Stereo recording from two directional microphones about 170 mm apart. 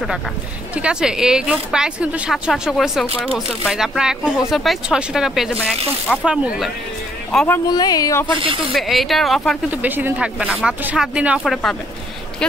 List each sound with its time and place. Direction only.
0.7 s speech: 5° right (ahead or behind)
7.3 s speech: 10° left (ahead or behind)
7.7 s speech: 20° left (ahead or behind)
8.4 s speech: 30° right (ahead or behind)
8.7 s speech: centre (ahead or behind)
9.7 s speech: 10° right (ahead or behind)